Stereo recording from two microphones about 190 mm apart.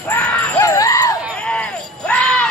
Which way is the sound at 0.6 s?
15° left (ahead or behind).